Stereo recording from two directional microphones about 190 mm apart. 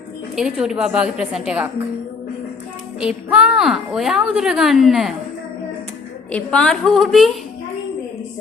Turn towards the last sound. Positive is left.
turn(degrees=0)  # may be behind; listen again after turning